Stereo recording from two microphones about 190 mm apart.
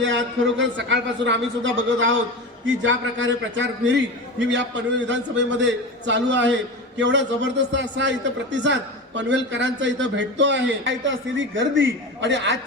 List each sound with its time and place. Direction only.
0.6 s a man's voice: 75° right (ahead or behind)